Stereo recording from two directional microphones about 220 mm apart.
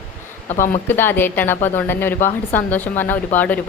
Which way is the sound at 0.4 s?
35° left (ahead or behind).